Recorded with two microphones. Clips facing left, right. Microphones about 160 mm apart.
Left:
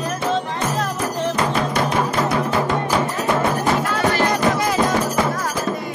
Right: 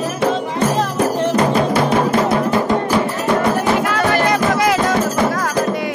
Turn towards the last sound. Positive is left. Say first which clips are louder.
# right 3 dB
turn(degrees=-85)